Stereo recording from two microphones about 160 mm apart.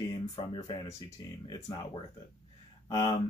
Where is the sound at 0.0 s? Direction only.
35° left (ahead or behind).